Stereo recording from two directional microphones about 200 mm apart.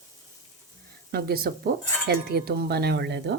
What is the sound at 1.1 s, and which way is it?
Speech, 50° right (ahead or behind).